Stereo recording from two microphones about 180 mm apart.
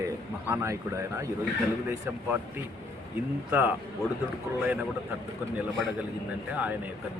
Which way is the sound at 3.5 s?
10° right (ahead or behind).